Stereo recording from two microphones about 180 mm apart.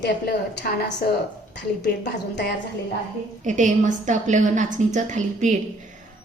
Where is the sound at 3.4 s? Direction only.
45° right (ahead or behind).